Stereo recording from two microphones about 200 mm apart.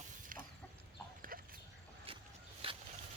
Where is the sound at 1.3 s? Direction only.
45° right (ahead or behind).